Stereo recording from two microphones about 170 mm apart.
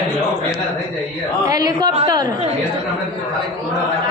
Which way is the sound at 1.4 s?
20° right (ahead or behind).